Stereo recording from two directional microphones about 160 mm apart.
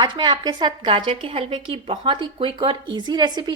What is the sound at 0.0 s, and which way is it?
A woman's voice, 25° right (ahead or behind).